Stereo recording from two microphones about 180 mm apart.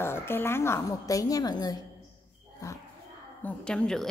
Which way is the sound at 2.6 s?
20° left (ahead or behind).